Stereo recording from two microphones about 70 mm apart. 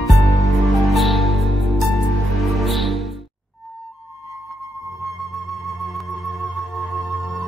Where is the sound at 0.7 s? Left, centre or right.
Centre.